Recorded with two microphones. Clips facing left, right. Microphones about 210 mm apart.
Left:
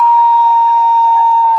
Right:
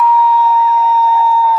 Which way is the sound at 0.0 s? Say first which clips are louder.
Left 1 dB; centre (ahead or behind).